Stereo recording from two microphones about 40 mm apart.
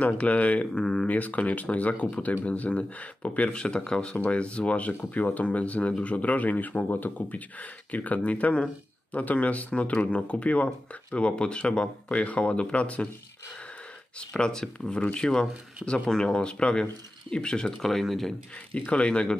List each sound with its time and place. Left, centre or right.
0.0 s speech: left
0.7 s speech: left
1.0 s speech: left
3.5 s speech: centre
4.3 s speech: left
14.3 s speech: centre
17.8 s speech: centre
18.7 s speech: left